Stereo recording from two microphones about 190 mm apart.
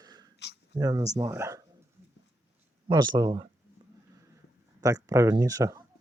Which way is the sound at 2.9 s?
25° right (ahead or behind).